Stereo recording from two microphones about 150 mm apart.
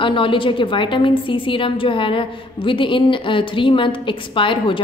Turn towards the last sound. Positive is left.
turn(degrees=35)  # may be behind; listen again after turning